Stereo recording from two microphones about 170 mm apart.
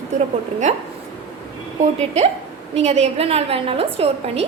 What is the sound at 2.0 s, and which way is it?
A woman's voice, 40° right (ahead or behind).